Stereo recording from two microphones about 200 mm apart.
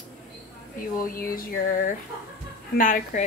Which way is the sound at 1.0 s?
45° left (ahead or behind).